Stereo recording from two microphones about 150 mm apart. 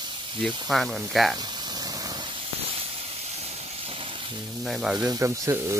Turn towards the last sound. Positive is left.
turn(degrees=-20)  # may be behind; listen again after turning